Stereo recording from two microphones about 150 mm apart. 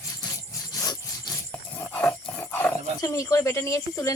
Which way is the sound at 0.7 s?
25° left (ahead or behind).